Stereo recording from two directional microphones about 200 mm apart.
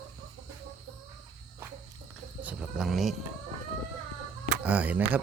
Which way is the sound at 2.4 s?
5° right (ahead or behind).